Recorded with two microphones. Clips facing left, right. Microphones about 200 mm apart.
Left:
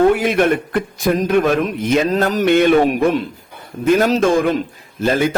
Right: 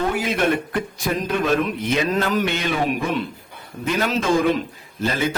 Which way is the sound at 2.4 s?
55° left (ahead or behind).